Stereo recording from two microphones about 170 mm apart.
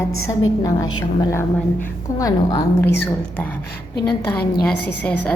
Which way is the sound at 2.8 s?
90° left.